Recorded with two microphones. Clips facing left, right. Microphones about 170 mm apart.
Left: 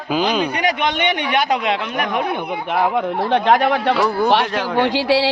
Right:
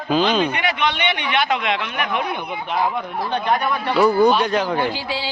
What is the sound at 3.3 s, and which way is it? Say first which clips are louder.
Speech: left 5 dB; 90° left.